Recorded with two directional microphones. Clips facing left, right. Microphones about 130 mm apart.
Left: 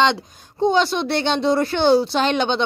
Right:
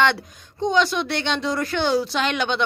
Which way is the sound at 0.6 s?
30° left (ahead or behind).